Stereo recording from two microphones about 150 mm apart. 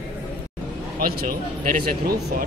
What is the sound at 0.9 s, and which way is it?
Speech, 80° right.